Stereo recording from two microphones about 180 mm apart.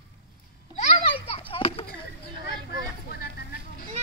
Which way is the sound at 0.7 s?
40° left (ahead or behind).